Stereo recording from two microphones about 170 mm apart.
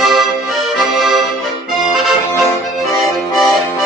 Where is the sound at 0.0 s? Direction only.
Centre (ahead or behind).